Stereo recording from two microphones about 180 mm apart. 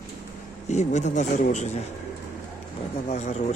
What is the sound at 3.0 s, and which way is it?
Speech, 40° left (ahead or behind).